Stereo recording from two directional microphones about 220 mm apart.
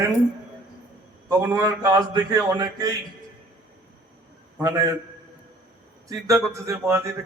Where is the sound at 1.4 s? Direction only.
15° right (ahead or behind).